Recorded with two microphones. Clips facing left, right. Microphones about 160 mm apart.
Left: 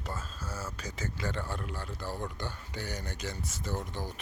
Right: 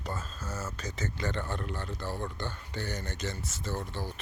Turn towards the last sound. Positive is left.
turn(degrees=15)  # may be behind; listen again after turning